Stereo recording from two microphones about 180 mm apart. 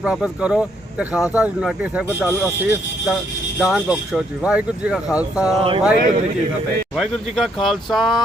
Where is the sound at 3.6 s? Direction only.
5° right (ahead or behind).